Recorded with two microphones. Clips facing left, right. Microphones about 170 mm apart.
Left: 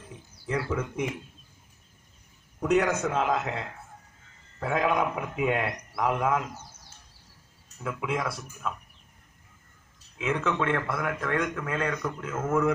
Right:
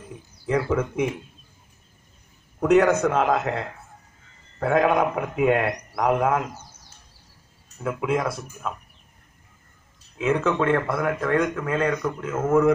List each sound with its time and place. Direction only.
0.6 s a man's voice: 60° right (ahead or behind)
2.6 s a man's voice: 65° right (ahead or behind)
7.8 s speech: 45° right (ahead or behind)
10.1 s speech: 40° right (ahead or behind)